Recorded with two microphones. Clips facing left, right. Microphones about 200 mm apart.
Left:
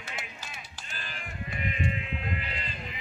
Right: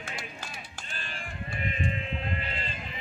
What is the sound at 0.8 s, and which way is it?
Sheep, 30° right (ahead or behind).